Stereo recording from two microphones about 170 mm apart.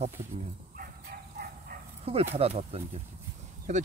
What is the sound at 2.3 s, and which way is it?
Speech, 35° right (ahead or behind).